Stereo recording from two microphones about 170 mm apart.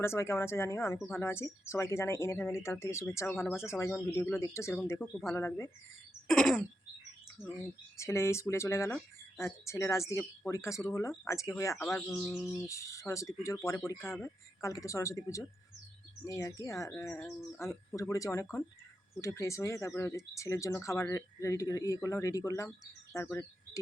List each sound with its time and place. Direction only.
0.0 s speech: 15° left (ahead or behind)
6.2 s a sound: 5° left (ahead or behind)
7.9 s speech: 15° left (ahead or behind)